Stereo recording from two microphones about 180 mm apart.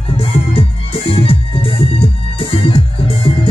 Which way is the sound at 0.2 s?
30° left (ahead or behind).